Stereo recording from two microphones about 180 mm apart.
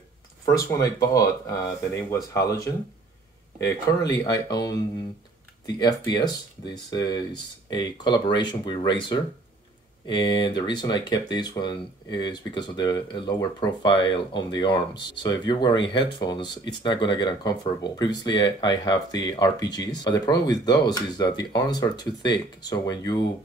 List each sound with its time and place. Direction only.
0.5 s speech: 15° left (ahead or behind)